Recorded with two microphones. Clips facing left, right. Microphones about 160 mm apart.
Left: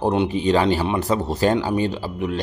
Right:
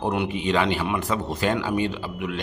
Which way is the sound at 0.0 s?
30° left (ahead or behind).